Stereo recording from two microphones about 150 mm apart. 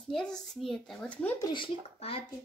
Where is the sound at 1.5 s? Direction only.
35° left (ahead or behind).